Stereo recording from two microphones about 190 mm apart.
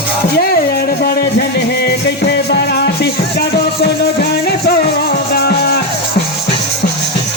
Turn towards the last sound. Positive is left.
turn(degrees=55)  # may be behind; listen again after turning